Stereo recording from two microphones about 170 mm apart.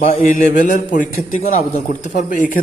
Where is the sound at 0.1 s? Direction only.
50° left (ahead or behind).